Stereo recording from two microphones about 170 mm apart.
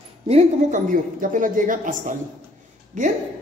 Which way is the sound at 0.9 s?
50° right (ahead or behind).